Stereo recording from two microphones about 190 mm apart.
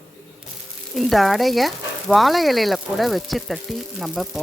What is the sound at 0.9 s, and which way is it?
Speech, centre (ahead or behind).